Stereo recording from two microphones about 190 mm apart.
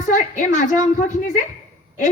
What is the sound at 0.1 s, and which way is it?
Speech, 40° left (ahead or behind).